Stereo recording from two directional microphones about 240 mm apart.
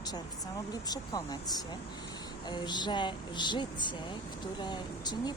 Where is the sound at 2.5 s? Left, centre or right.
Centre.